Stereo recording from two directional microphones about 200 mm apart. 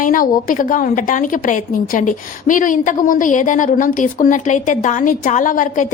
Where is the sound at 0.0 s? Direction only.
40° left (ahead or behind).